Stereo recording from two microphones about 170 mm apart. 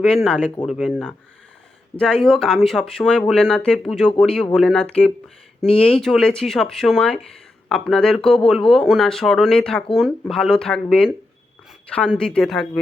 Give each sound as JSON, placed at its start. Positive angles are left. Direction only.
{"t": 0.3, "sound": "speech", "side_deg": 5}